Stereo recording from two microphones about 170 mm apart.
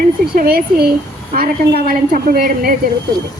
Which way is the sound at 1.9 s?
60° right (ahead or behind).